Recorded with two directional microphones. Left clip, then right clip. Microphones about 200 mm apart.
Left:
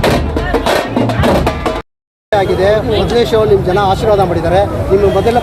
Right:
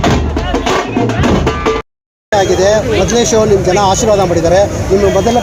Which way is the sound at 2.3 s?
35° right (ahead or behind).